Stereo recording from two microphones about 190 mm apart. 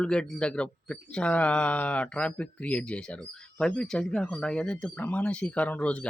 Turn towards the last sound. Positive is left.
turn(degrees=5)  # may be behind; listen again after turning